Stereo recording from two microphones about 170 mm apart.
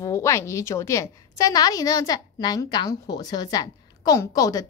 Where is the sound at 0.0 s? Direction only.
15° left (ahead or behind).